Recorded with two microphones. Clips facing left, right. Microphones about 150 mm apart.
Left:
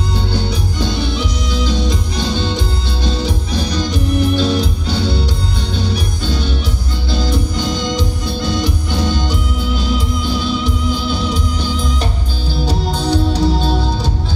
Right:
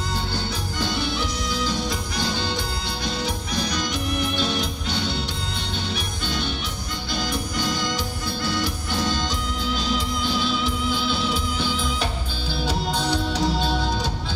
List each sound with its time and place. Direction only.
1.9 s music: 25° left (ahead or behind)
10.9 s music: 45° left (ahead or behind)
13.0 s music: 35° left (ahead or behind)